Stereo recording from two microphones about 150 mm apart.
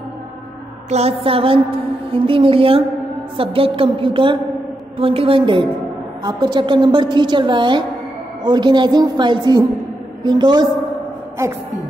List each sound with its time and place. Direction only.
0.8 s a woman's voice: 45° right (ahead or behind); by 10.7 s 30° right (ahead or behind)